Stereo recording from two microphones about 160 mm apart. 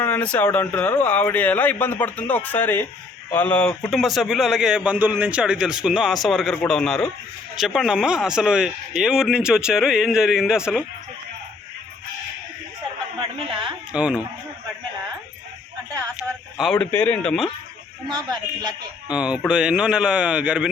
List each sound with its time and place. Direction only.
0.0 s speech: 10° left (ahead or behind)
13.1 s a sound: 30° right (ahead or behind)
13.9 s speech: 5° right (ahead or behind)
16.6 s speech: 5° left (ahead or behind)
18.1 s a man's voice: 25° right (ahead or behind)
19.1 s speech: 5° right (ahead or behind)